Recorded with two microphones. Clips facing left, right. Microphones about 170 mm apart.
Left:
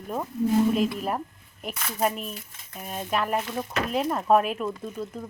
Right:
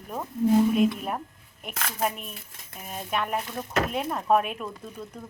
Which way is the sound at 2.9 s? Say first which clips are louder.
Left 2 dB; centre (ahead or behind).